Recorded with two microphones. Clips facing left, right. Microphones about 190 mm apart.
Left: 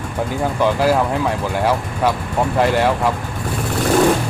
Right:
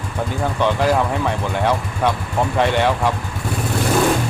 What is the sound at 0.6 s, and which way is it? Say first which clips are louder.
Speech: left 2 dB; 5° left (ahead or behind).